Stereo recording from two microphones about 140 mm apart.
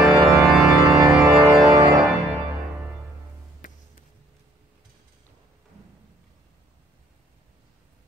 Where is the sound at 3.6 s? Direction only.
75° left (ahead or behind).